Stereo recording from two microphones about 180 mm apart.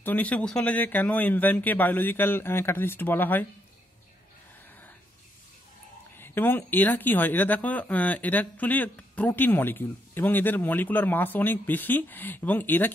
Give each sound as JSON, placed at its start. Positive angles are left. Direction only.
{"t": 0.0, "sound": "speech", "side_deg": 10}
{"t": 6.1, "sound": "speech", "side_deg": 10}